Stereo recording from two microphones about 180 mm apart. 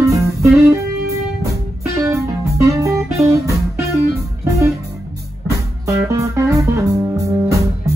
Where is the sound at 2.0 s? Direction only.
15° right (ahead or behind).